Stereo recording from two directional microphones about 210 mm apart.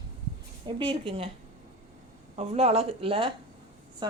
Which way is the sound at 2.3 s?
30° right (ahead or behind).